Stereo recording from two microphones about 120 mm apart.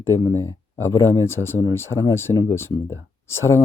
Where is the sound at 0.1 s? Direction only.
25° left (ahead or behind).